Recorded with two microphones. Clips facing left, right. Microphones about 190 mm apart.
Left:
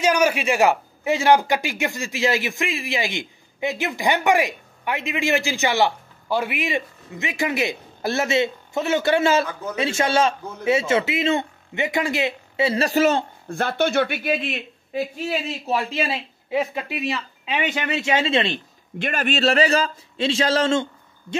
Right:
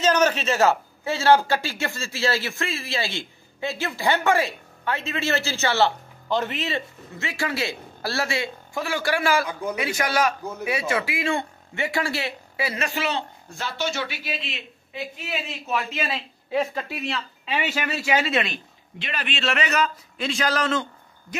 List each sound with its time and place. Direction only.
0.0 s a man's voice: 10° left (ahead or behind)
9.5 s a man's voice: 15° right (ahead or behind)
9.8 s a man's voice: 25° left (ahead or behind)
16.4 s a man's voice: 15° left (ahead or behind); by 18.6 s 30° left (ahead or behind)
18.9 s a man's voice: 50° left (ahead or behind); by 20.8 s 25° left (ahead or behind)